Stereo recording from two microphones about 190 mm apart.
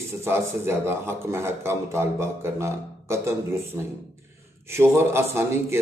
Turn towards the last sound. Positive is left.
turn(degrees=-15)  # may be behind; listen again after turning